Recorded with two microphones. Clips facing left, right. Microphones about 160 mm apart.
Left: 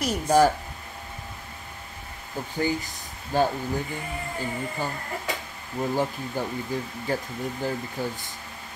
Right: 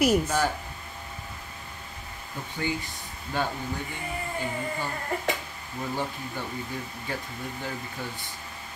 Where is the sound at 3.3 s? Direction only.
40° left (ahead or behind).